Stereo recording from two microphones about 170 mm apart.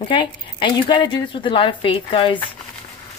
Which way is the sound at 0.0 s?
30° left (ahead or behind).